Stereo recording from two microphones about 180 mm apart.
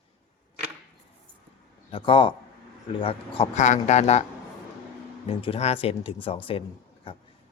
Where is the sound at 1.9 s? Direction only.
30° left (ahead or behind).